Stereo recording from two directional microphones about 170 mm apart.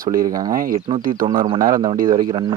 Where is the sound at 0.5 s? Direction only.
60° right (ahead or behind).